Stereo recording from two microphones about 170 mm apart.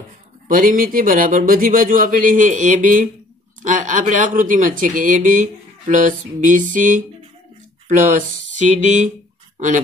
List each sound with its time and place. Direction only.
0.5 s speech: 55° right (ahead or behind)